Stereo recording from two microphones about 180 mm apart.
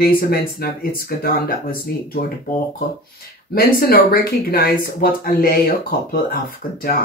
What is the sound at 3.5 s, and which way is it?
Speech, 55° left (ahead or behind).